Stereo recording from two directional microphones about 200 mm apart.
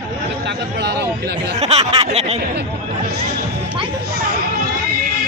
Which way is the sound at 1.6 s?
30° right (ahead or behind).